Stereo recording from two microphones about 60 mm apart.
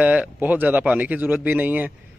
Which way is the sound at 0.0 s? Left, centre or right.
Right.